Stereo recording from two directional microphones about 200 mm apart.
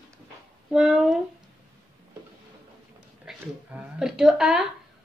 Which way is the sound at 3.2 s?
5° right (ahead or behind).